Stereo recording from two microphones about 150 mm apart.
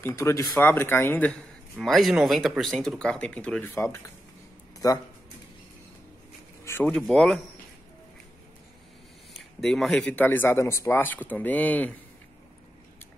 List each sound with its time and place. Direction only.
0.0 s speech: 20° left (ahead or behind)
1.8 s speech: centre (ahead or behind); by 5.0 s 25° left (ahead or behind)
6.6 s speech: 15° left (ahead or behind)
9.3 s speech: centre (ahead or behind)